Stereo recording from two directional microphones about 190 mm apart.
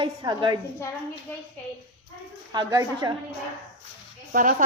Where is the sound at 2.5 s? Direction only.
20° right (ahead or behind).